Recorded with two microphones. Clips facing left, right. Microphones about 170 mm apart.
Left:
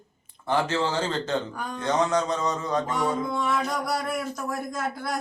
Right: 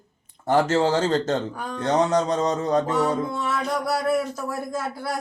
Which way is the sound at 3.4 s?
5° right (ahead or behind).